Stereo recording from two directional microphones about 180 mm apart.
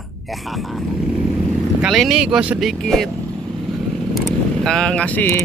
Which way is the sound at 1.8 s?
Centre (ahead or behind).